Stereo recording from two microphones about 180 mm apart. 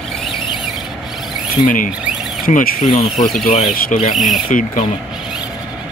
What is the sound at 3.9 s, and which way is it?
Speech, 45° left (ahead or behind).